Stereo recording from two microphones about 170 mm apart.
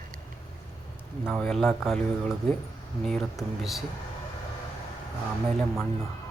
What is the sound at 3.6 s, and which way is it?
Speech, centre (ahead or behind).